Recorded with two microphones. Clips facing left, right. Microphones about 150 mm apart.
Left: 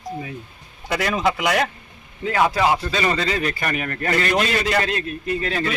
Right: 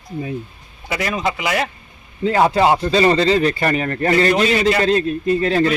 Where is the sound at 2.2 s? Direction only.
30° right (ahead or behind).